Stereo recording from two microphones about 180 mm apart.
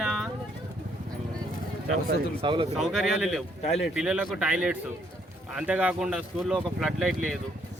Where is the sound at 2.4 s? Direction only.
25° right (ahead or behind).